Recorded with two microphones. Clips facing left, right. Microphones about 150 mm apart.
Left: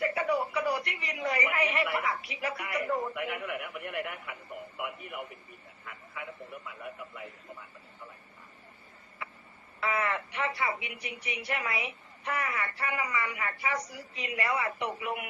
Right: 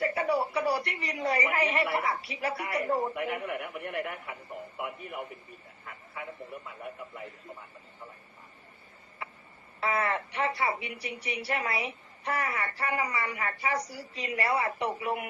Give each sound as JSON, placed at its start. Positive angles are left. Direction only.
{"t": 0.0, "sound": "a woman's voice", "side_deg": -35}
{"t": 9.8, "sound": "a woman's voice", "side_deg": -35}